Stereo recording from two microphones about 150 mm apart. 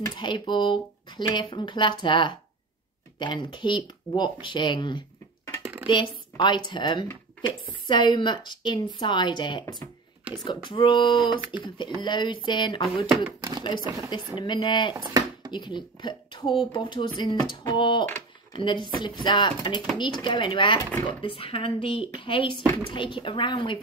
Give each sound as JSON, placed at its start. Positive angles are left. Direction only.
{"t": 0.2, "sound": "a woman's voice", "side_deg": 30}
{"t": 13.4, "sound": "speech", "side_deg": -25}
{"t": 14.4, "sound": "a woman's voice", "side_deg": 30}
{"t": 15.0, "sound": "dishes", "side_deg": -25}
{"t": 15.5, "sound": "a woman's voice", "side_deg": 30}